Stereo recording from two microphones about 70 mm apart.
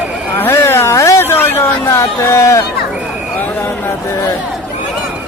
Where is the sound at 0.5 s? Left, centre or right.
Left.